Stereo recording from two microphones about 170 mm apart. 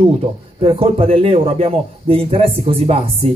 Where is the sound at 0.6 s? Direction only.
35° right (ahead or behind).